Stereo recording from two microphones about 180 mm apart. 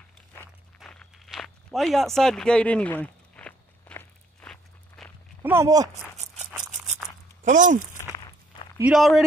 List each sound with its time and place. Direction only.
0.7 s walk: centre (ahead or behind)
5.4 s speech: 15° right (ahead or behind)
6.1 s rattle: 40° right (ahead or behind)
7.4 s speech: 45° right (ahead or behind)
8.7 s speech: 5° right (ahead or behind)